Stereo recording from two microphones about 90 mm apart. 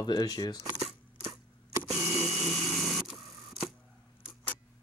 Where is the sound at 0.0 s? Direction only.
50° left (ahead or behind).